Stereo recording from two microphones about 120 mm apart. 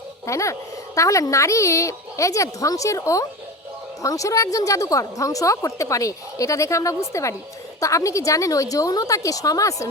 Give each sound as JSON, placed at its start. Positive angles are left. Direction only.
{"t": 0.3, "sound": "a woman's voice", "side_deg": 25}